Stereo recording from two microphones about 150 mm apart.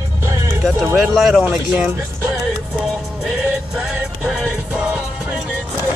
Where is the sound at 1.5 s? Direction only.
10° right (ahead or behind).